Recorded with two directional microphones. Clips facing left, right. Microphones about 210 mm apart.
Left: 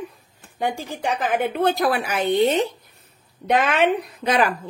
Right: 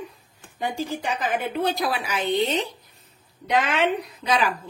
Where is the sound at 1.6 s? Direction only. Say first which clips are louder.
Left 5 dB; 55° left (ahead or behind).